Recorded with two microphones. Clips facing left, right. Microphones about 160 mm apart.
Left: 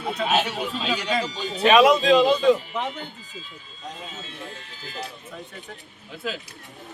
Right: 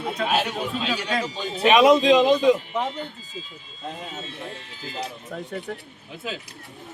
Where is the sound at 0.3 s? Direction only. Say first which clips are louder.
Left 1 dB; centre (ahead or behind).